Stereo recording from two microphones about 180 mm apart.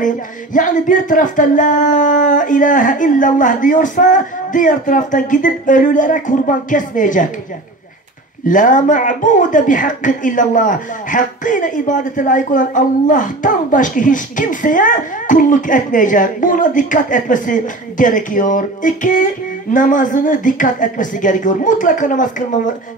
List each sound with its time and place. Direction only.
0.0 s speech: 45° left (ahead or behind)
8.5 s speech: 45° left (ahead or behind)